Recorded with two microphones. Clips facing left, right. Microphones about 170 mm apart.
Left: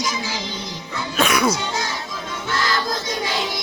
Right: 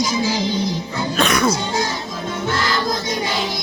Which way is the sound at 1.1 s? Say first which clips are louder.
Right 1 dB; 10° left (ahead or behind).